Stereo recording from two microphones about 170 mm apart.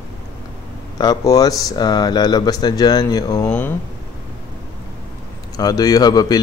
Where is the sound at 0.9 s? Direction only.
25° left (ahead or behind).